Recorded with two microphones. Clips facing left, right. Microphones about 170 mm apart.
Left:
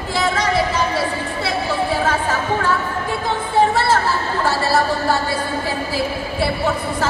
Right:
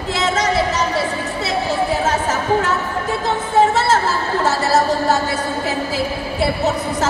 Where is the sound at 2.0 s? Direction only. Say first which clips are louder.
Right 1 dB; 20° right (ahead or behind).